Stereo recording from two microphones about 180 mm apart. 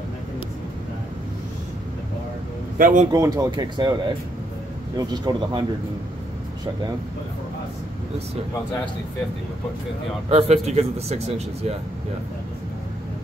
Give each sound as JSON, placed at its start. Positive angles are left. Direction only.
{"t": 2.8, "sound": "speech", "side_deg": -45}
{"t": 3.1, "sound": "speech", "side_deg": -20}
{"t": 10.3, "sound": "speech", "side_deg": -35}